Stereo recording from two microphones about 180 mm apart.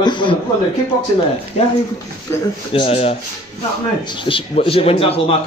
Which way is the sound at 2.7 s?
30° left (ahead or behind).